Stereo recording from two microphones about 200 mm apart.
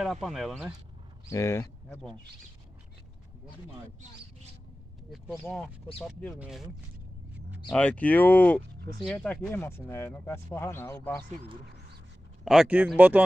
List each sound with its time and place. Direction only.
0.0 s speech: centre (ahead or behind)
1.3 s speech: 15° left (ahead or behind)
6.0 s speech: centre (ahead or behind)
7.7 s speech: 5° left (ahead or behind)
12.4 s speech: 5° right (ahead or behind)